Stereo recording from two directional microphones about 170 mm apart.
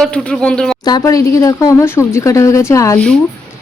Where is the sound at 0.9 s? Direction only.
20° left (ahead or behind).